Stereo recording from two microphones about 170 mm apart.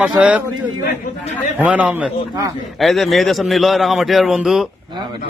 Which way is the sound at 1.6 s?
10° right (ahead or behind).